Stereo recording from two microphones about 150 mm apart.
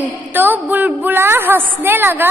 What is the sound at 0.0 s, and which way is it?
A woman's voice, 10° right (ahead or behind).